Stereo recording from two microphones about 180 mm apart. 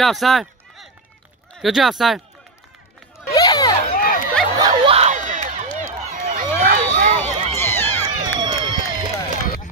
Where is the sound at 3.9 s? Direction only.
50° left (ahead or behind).